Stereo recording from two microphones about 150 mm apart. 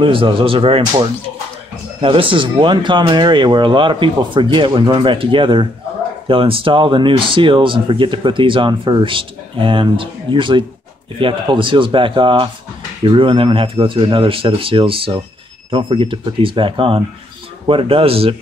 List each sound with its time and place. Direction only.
0.0 s speech: 35° right (ahead or behind)
2.0 s speech: 35° right (ahead or behind)